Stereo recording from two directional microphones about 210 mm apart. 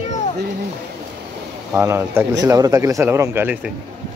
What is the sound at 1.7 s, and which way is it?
Speech, 10° right (ahead or behind).